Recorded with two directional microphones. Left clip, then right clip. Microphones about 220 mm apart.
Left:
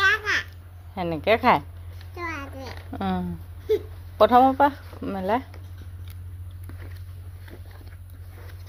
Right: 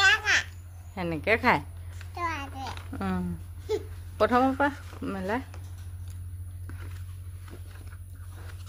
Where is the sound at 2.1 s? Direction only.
10° right (ahead or behind).